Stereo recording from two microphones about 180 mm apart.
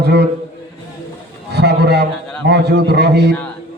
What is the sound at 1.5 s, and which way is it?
A man's voice, 65° right (ahead or behind).